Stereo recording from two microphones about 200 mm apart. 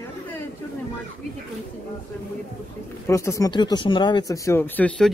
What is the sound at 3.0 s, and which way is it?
Speech, 15° left (ahead or behind).